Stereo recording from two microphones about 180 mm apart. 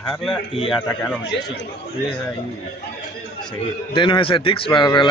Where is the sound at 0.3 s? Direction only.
25° left (ahead or behind).